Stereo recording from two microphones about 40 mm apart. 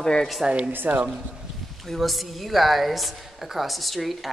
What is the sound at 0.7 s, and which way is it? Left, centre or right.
Speech, right.